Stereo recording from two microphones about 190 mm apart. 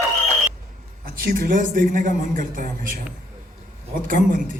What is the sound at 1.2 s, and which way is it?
Speech, 45° right (ahead or behind).